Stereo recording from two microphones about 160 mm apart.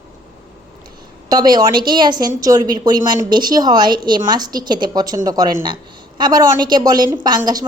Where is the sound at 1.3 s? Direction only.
25° right (ahead or behind).